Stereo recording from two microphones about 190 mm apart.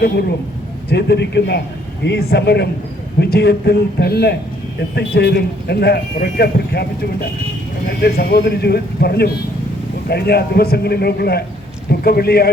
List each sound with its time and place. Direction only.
0.9 s speech: 60° left (ahead or behind)
7.9 s speech: 55° left (ahead or behind)